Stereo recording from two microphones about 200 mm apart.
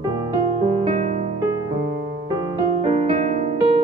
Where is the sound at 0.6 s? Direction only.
30° right (ahead or behind).